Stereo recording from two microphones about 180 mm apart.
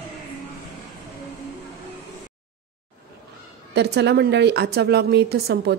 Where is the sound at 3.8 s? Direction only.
70° right (ahead or behind).